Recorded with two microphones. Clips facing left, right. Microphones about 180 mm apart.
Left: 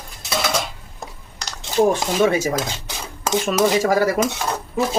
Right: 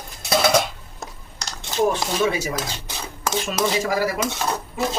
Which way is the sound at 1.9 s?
45° left (ahead or behind).